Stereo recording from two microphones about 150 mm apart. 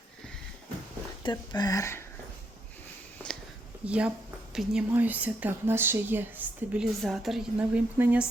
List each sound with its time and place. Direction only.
1.2 s speech: 25° left (ahead or behind)
3.8 s a woman's voice: 10° right (ahead or behind)
7.0 s a woman's voice: centre (ahead or behind)
7.9 s a woman's voice: 15° right (ahead or behind)